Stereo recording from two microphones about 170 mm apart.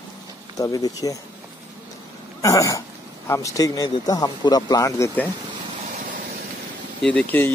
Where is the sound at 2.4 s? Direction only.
20° left (ahead or behind).